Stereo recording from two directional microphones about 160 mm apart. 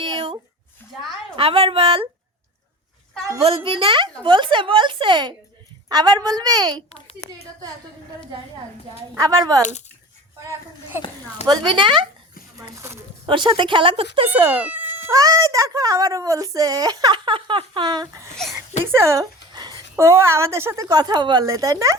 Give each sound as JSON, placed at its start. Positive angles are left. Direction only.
{"t": 0.0, "sound": "a sound", "side_deg": -35}
{"t": 1.4, "sound": "a woman's voice", "side_deg": -35}
{"t": 3.4, "sound": "a woman's voice", "side_deg": -35}
{"t": 6.9, "sound": "a woman's voice", "side_deg": 40}
{"t": 9.1, "sound": "a woman's voice", "side_deg": -20}
{"t": 11.4, "sound": "a woman's voice", "side_deg": -25}
{"t": 12.5, "sound": "speech", "side_deg": -20}
{"t": 13.2, "sound": "a woman's voice", "side_deg": -30}
{"t": 14.3, "sound": "a woman's voice", "side_deg": -10}